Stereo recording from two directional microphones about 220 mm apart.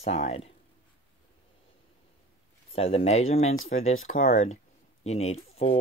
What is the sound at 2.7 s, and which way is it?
Speech, 25° left (ahead or behind).